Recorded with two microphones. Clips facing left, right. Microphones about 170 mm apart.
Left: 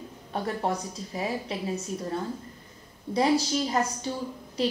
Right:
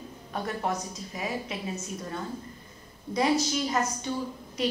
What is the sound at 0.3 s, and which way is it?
A woman's voice, 30° left (ahead or behind).